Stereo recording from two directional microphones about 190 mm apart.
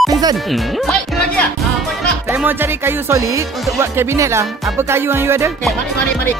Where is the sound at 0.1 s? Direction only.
20° right (ahead or behind).